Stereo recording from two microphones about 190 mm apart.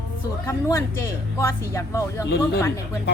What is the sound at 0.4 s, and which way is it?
A woman's voice, 15° left (ahead or behind).